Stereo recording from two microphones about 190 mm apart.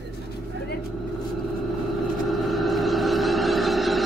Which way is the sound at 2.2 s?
Centre (ahead or behind).